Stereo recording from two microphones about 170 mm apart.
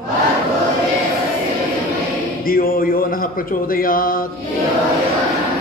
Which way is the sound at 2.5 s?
60° left (ahead or behind).